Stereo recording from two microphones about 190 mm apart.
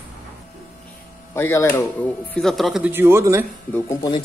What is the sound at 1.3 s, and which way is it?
Speech, 15° left (ahead or behind).